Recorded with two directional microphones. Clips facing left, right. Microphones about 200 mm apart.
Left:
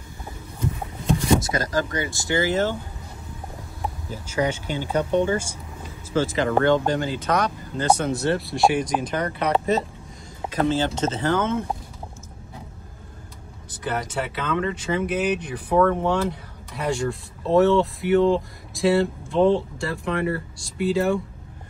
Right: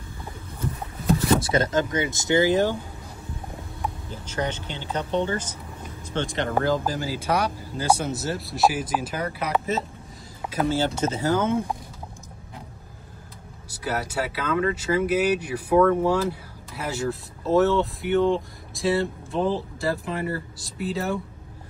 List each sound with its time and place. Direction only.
1.4 s speech: 25° right (ahead or behind)
4.1 s speech: 10° left (ahead or behind)
10.5 s speech: 10° right (ahead or behind)
13.8 s speech: 10° right (ahead or behind)